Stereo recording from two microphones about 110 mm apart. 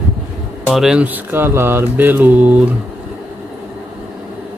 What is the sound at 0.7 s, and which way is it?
Speech, 5° right (ahead or behind).